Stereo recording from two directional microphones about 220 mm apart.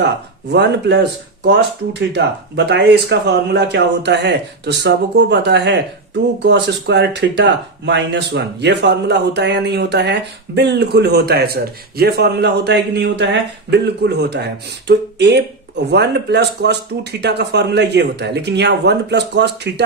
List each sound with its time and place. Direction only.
0.0 s speech: 50° right (ahead or behind)